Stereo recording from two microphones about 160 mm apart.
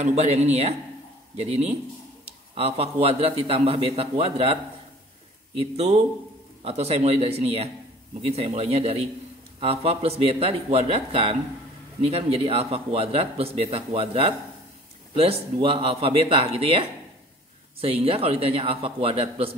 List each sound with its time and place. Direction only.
0.0 s a man's voice: 45° right (ahead or behind)
5.6 s a man's voice: 40° right (ahead or behind)